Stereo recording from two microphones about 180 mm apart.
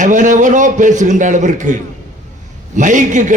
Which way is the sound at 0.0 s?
45° right (ahead or behind).